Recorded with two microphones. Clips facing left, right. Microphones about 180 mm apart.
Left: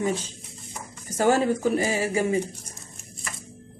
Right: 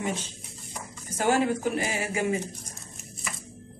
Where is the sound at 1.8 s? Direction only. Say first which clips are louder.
Left 5 dB; 35° left (ahead or behind).